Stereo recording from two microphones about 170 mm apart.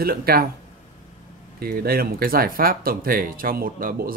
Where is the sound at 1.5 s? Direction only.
60° right (ahead or behind).